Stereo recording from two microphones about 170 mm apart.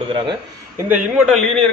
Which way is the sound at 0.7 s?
10° right (ahead or behind).